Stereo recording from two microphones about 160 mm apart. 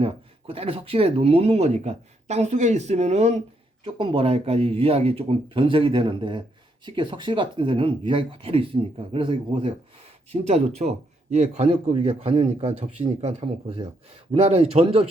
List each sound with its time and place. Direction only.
0.0 s speech: 35° right (ahead or behind)
3.8 s speech: 30° right (ahead or behind)